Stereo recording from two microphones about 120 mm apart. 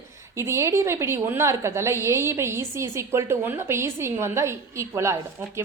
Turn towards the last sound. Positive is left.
turn(degrees=-20)  # may be behind; listen again after turning